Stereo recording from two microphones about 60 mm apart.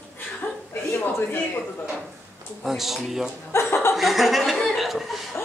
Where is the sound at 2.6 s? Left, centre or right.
Centre.